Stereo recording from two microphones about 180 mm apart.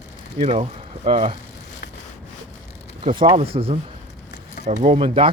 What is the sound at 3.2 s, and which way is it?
Speech, 30° right (ahead or behind).